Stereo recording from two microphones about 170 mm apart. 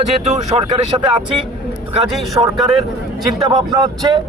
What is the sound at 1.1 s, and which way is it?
A man's voice, 30° right (ahead or behind).